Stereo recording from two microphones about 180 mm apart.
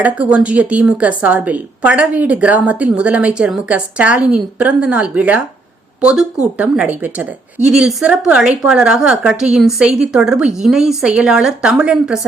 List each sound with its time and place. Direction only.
0.0 s a woman's voice: 5° right (ahead or behind)